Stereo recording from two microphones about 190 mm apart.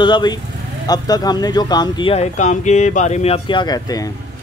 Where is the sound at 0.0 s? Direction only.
25° left (ahead or behind).